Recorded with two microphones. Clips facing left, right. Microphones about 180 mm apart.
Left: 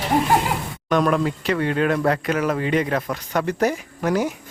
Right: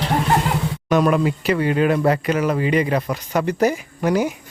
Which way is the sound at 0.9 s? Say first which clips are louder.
Right 2 dB; 5° right (ahead or behind).